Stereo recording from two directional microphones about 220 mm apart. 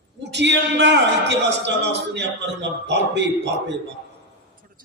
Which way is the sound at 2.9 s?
50° right (ahead or behind).